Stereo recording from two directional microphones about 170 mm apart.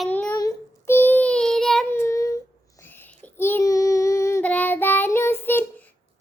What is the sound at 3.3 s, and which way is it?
Child singing, 15° left (ahead or behind).